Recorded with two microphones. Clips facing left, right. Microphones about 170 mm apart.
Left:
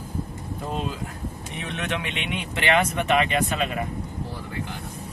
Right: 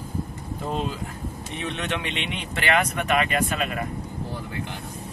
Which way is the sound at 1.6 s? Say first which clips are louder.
Even; 5° left (ahead or behind).